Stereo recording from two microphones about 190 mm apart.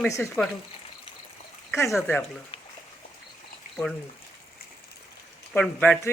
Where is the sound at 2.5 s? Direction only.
25° left (ahead or behind).